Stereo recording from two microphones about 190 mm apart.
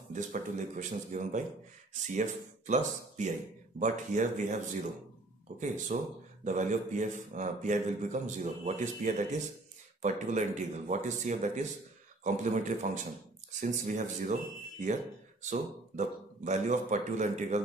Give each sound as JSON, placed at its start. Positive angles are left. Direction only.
{"t": 0.1, "sound": "a man's voice", "side_deg": -40}
{"t": 15.4, "sound": "a man's voice", "side_deg": -40}